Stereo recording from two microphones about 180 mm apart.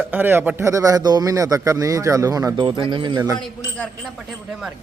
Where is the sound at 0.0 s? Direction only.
10° right (ahead or behind).